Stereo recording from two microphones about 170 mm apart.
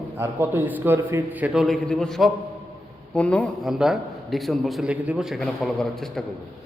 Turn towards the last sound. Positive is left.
turn(degrees=0)  # may be behind; listen again after turning